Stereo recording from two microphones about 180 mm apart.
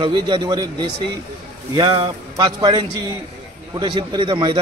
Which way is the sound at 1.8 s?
25° right (ahead or behind).